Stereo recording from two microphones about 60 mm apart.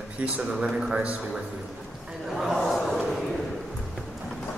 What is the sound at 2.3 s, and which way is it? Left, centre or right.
Speech, centre.